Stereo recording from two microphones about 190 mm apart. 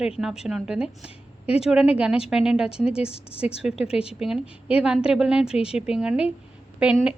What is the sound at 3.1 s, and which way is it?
Speech, 30° left (ahead or behind).